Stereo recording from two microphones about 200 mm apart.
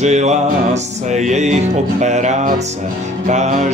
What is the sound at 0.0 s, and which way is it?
Music, 35° right (ahead or behind).